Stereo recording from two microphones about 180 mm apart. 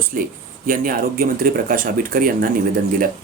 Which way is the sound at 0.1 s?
50° right (ahead or behind).